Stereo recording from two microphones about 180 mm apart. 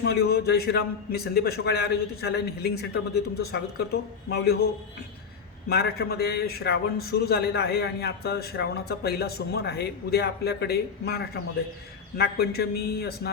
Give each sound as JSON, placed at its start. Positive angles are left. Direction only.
{"t": 0.0, "sound": "a man's voice", "side_deg": 60}